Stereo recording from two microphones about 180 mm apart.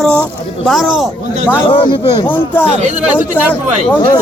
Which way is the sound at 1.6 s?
30° left (ahead or behind).